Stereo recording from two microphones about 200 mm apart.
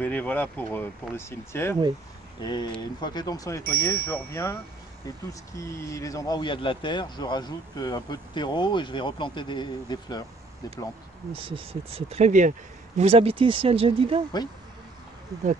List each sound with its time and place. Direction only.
0.0 s speech: 10° left (ahead or behind)
5.6 s speech: 15° left (ahead or behind)
11.3 s speech: 30° right (ahead or behind)